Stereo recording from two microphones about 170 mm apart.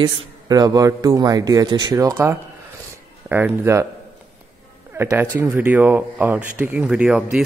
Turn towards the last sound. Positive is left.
turn(degrees=-5)  # may be behind; listen again after turning